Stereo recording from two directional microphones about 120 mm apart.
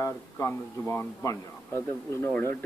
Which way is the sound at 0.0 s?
20° left (ahead or behind).